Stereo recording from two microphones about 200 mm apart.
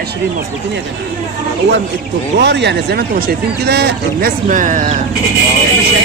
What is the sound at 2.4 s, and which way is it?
Speech, 60° right (ahead or behind).